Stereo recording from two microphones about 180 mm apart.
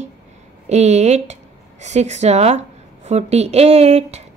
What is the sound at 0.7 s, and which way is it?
A woman's voice, 40° right (ahead or behind).